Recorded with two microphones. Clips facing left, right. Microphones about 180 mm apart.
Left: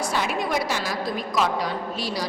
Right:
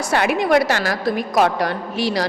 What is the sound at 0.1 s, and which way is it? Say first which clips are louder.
A woman's voice: right 13 dB; 70° right (ahead or behind).